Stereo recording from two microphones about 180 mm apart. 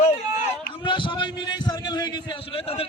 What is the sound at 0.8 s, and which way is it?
A man's voice, 25° left (ahead or behind).